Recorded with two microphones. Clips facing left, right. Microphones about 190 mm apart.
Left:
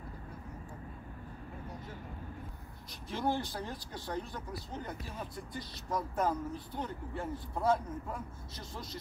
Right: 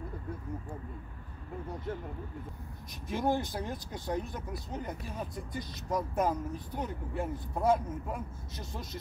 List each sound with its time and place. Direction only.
3.1 s speech: 15° right (ahead or behind)